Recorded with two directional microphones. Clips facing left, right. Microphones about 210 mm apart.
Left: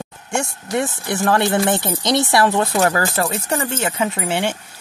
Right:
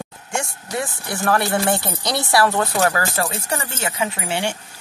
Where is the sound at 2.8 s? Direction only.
35° left (ahead or behind).